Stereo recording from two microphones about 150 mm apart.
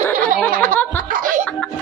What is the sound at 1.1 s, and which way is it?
Chuckle, 65° right (ahead or behind).